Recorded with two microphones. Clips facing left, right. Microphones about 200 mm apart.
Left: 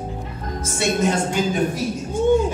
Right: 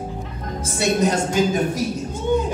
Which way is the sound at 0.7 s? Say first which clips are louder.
Right 1 dB; 40° right (ahead or behind).